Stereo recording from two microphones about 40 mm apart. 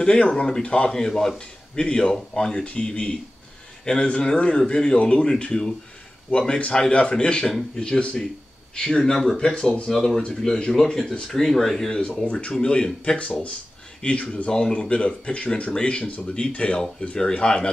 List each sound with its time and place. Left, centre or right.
0.0 s a man's voice: left
2.6 s speech: left
9.1 s speech: centre
9.4 s speech: left
9.8 s speech: centre
12.2 s speech: left